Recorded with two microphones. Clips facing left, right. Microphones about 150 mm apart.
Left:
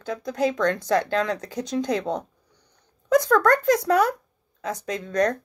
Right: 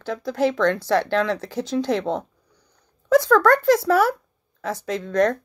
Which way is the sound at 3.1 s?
20° left (ahead or behind).